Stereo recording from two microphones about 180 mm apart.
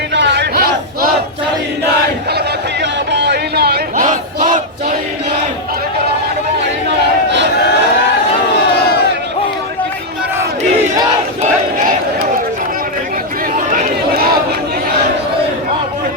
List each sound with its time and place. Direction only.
0.1 s crowd: 75° right (ahead or behind)
2.8 s crowd: 75° right (ahead or behind); by 4.6 s 45° right (ahead or behind)
13.7 s a sound: 50° right (ahead or behind)